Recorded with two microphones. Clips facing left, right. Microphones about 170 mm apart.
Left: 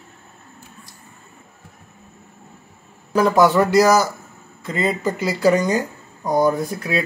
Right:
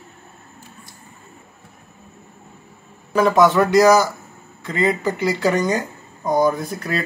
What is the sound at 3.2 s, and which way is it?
Speech, centre (ahead or behind).